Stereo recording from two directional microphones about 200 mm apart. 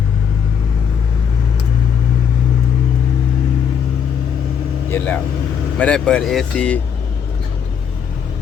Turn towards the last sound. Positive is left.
turn(degrees=5)  # may be behind; listen again after turning